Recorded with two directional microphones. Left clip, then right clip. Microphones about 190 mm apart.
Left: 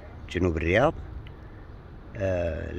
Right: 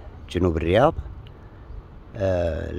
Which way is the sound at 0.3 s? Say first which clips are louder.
Right 4 dB; 20° right (ahead or behind).